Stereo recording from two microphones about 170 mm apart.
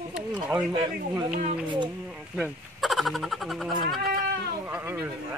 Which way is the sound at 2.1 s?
Centre (ahead or behind).